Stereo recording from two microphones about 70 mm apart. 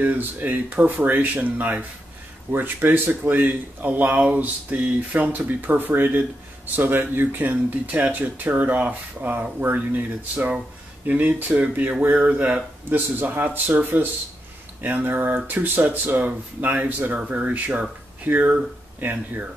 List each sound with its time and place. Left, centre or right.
0.0 s speech: right